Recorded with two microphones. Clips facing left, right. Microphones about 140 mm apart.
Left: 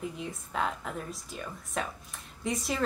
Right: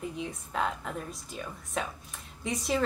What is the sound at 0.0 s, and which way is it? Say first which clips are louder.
A woman's voice: right 1 dB; centre (ahead or behind).